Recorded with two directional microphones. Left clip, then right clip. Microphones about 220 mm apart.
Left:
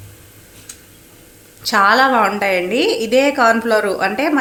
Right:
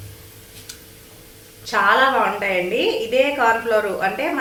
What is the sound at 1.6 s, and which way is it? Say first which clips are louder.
A woman's voice: left 4 dB; 55° left (ahead or behind).